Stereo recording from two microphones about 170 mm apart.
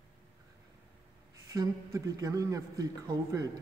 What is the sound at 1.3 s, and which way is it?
A man's voice, 20° right (ahead or behind).